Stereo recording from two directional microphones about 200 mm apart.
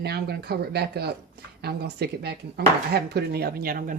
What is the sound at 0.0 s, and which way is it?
Speech, 55° right (ahead or behind).